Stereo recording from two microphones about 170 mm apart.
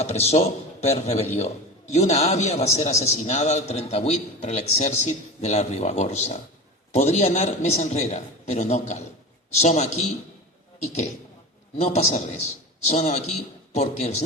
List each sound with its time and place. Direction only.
0.0 s a man's voice: 40° left (ahead or behind)